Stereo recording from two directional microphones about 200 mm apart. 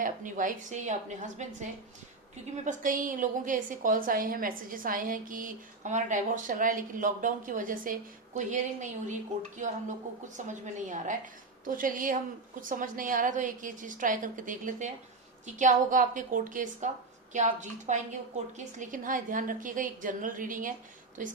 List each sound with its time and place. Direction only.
0.0 s a woman's voice: 40° right (ahead or behind)
2.6 s a woman's voice: 40° right (ahead or behind)